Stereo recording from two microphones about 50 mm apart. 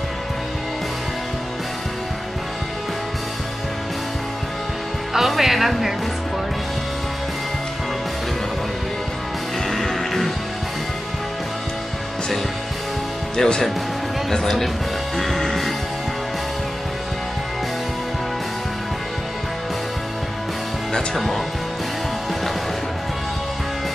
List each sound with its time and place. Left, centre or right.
5.1 s speech: centre
9.7 s music: centre
13.4 s speech: centre
15.1 s music: centre